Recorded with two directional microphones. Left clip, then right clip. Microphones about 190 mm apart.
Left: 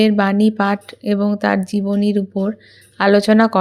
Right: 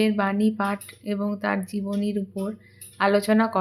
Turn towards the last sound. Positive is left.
turn(degrees=40)  # may be behind; listen again after turning